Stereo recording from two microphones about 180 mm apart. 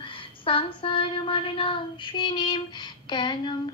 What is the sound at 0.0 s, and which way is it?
Child singing, 30° left (ahead or behind).